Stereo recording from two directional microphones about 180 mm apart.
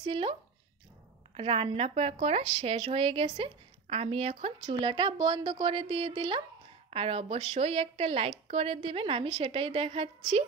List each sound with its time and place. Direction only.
0.0 s a woman's voice: 30° right (ahead or behind)